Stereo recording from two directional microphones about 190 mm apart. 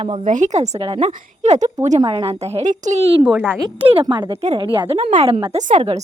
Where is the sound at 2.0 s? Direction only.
25° right (ahead or behind).